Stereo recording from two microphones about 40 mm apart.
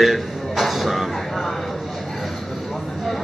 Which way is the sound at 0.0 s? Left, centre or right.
Centre.